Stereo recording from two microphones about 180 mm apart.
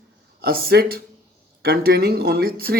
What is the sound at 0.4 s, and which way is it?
Speech, 60° right (ahead or behind).